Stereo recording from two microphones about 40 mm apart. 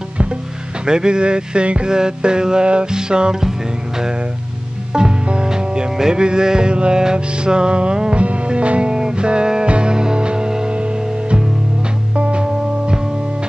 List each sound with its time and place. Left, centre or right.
0.8 s music: centre
4.9 s music: right